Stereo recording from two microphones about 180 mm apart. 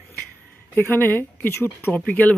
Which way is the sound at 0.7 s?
10° left (ahead or behind).